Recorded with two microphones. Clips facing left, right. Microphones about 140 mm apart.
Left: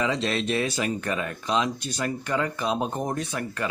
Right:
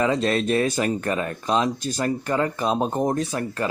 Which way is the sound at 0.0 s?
45° right (ahead or behind).